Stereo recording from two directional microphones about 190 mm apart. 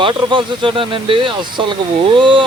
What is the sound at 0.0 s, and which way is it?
Speech, 25° right (ahead or behind).